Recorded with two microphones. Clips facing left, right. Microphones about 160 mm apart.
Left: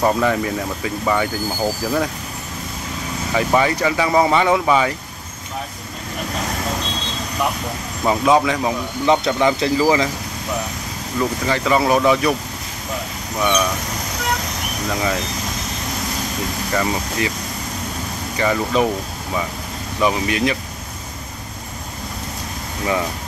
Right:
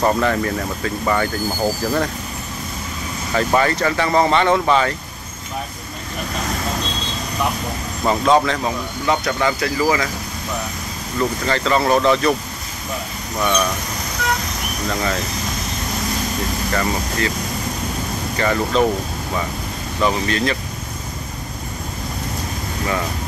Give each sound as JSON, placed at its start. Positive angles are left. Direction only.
{"t": 0.0, "sound": "speech", "side_deg": 10}
{"t": 3.3, "sound": "speech", "side_deg": 10}
{"t": 8.0, "sound": "speech", "side_deg": 5}
{"t": 11.1, "sound": "speech", "side_deg": 10}
{"t": 13.4, "sound": "speech", "side_deg": 5}
{"t": 14.9, "sound": "speech", "side_deg": 10}
{"t": 16.7, "sound": "speech", "side_deg": 15}
{"t": 18.3, "sound": "speech", "side_deg": 10}
{"t": 20.0, "sound": "speech", "side_deg": 10}